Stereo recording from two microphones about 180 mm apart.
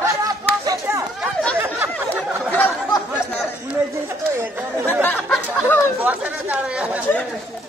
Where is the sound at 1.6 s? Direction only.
10° right (ahead or behind).